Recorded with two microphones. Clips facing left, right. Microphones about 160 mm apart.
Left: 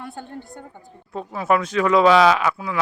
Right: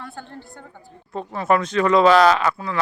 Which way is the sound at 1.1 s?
5° left (ahead or behind).